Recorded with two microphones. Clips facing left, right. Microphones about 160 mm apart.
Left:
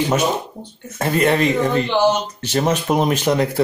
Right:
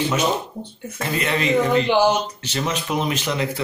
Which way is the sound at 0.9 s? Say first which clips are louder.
Left 7 dB; 45° left (ahead or behind).